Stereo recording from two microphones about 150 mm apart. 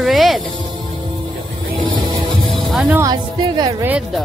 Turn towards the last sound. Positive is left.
turn(degrees=-25)  # may be behind; listen again after turning